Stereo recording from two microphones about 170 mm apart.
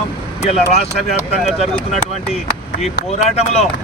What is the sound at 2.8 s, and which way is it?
Speech, 40° left (ahead or behind).